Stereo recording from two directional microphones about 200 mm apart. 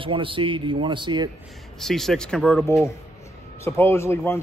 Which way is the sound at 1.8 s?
Centre (ahead or behind).